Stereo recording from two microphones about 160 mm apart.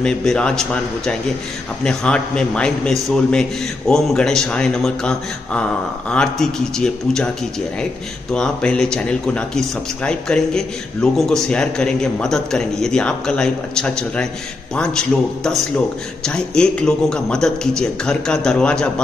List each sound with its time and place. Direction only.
0.0 s speech: 5° left (ahead or behind)
8.3 s speech: 5° left (ahead or behind)